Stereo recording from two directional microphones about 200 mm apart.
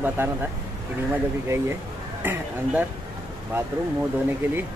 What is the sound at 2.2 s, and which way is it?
Speech, 10° right (ahead or behind).